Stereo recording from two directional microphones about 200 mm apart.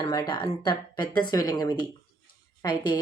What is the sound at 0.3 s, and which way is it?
A woman's voice, 25° left (ahead or behind).